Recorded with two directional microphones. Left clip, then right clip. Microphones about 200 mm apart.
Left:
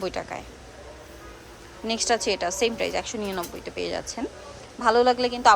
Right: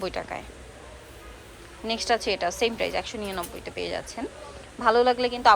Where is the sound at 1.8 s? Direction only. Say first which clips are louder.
Left 1 dB; 15° left (ahead or behind).